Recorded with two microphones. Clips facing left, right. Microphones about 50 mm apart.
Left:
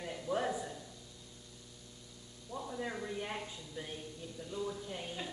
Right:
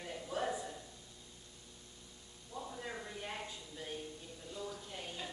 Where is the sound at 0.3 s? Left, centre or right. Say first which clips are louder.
Left 5 dB; right.